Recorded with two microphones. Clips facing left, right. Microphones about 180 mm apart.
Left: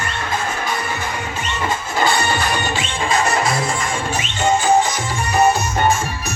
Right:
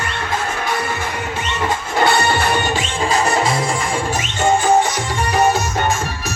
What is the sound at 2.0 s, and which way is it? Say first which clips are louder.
Music: right 3 dB; 65° right (ahead or behind).